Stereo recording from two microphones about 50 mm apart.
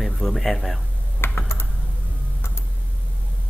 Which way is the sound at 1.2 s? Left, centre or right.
Left.